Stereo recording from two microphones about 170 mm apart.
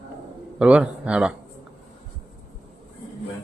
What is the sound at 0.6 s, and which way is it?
Speech, 5° right (ahead or behind).